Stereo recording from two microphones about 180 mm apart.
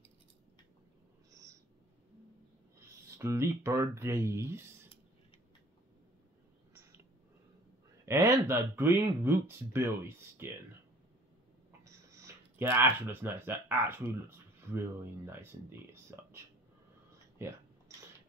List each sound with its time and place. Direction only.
1.3 s owl: 20° right (ahead or behind)
3.2 s speech: 15° right (ahead or behind)
8.0 s speech: 15° right (ahead or behind)
11.8 s speech: 15° right (ahead or behind)